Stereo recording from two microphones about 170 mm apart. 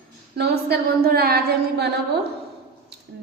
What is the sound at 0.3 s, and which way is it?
A woman's voice, 70° right (ahead or behind).